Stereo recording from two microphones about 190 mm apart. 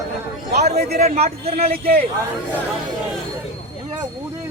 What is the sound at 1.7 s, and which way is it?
Speech, 50° right (ahead or behind).